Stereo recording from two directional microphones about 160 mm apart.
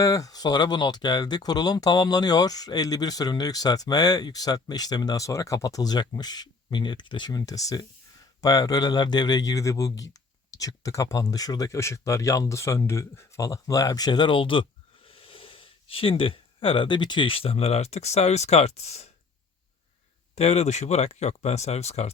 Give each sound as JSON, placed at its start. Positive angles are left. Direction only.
{"t": 0.0, "sound": "speech", "side_deg": 20}
{"t": 20.3, "sound": "speech", "side_deg": 45}